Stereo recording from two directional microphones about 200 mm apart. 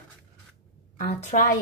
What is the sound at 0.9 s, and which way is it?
Speech, 40° left (ahead or behind).